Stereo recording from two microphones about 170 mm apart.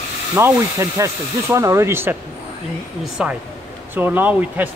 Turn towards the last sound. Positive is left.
turn(degrees=-10)  # may be behind; listen again after turning